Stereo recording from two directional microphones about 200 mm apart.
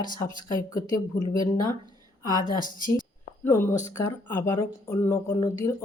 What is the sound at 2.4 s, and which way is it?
Speech, 45° left (ahead or behind).